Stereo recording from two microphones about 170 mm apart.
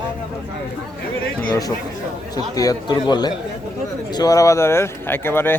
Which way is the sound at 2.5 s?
25° left (ahead or behind).